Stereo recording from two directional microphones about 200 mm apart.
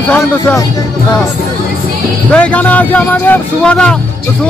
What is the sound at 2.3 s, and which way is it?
Speech, 5° left (ahead or behind).